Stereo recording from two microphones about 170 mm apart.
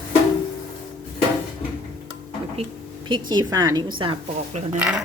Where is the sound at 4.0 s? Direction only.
30° right (ahead or behind).